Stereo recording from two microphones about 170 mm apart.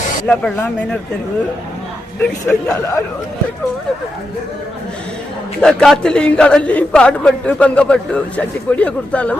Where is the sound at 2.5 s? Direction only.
15° left (ahead or behind).